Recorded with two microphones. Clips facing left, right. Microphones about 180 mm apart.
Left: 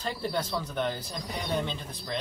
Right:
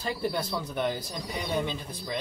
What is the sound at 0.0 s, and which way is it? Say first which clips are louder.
A woman's voice: right 1 dB; 10° right (ahead or behind).